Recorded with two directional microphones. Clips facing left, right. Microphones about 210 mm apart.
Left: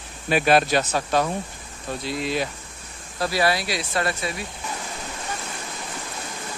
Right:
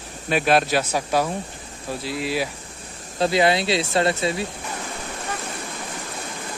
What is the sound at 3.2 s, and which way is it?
Speech, 20° right (ahead or behind).